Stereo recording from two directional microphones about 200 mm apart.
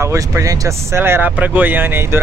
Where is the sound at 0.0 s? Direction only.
15° right (ahead or behind).